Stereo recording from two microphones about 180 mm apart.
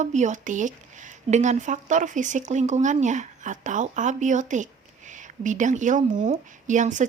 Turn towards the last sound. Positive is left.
turn(degrees=-45)  # may be behind; listen again after turning